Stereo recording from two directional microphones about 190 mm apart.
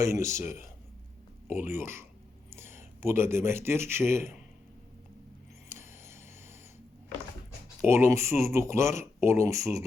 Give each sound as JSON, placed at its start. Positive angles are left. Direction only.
{"t": 0.0, "sound": "speech", "side_deg": -15}
{"t": 5.6, "sound": "a sound", "side_deg": -15}
{"t": 7.9, "sound": "speech", "side_deg": -15}